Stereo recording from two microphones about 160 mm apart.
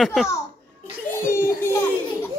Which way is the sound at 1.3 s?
15° left (ahead or behind).